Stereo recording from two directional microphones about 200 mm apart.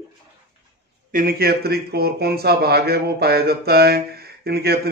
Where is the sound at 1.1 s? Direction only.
45° right (ahead or behind).